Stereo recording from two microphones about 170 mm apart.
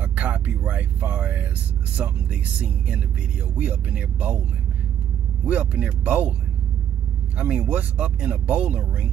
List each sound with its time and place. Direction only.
0.0 s vehicle: 10° right (ahead or behind)
2.0 s speech: 10° right (ahead or behind)
3.6 s speech: 5° right (ahead or behind)
5.5 s speech: 10° right (ahead or behind)
7.3 s speech: 5° right (ahead or behind)